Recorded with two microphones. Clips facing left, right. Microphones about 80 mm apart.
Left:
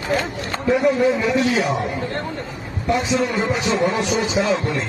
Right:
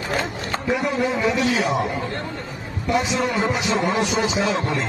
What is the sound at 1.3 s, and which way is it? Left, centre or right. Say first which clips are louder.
Speech: left 2 dB; left.